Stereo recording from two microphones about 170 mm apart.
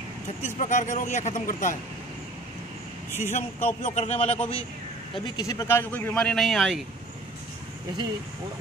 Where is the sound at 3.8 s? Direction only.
40° left (ahead or behind).